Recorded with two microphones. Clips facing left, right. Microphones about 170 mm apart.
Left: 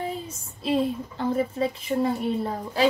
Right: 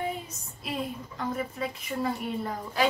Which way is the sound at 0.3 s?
30° left (ahead or behind).